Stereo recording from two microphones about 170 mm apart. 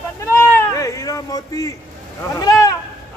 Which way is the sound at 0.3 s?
15° left (ahead or behind).